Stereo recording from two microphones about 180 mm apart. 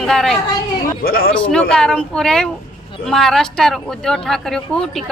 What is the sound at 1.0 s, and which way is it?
Speech, 55° left (ahead or behind).